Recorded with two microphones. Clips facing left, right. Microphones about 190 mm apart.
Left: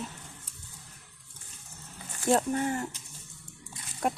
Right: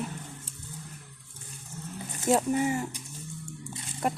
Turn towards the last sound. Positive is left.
turn(degrees=0)  # may be behind; listen again after turning